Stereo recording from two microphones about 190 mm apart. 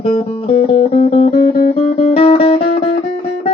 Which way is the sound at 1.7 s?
30° left (ahead or behind).